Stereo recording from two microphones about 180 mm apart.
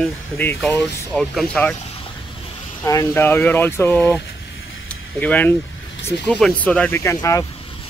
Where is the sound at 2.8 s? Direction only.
15° left (ahead or behind).